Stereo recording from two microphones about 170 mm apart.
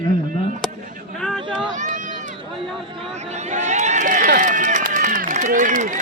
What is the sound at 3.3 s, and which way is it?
Run, 45° right (ahead or behind).